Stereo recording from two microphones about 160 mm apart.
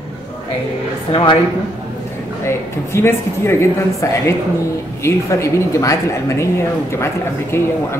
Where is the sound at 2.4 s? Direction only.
15° left (ahead or behind).